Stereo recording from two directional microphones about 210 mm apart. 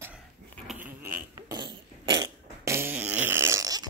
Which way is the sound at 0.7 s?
10° right (ahead or behind).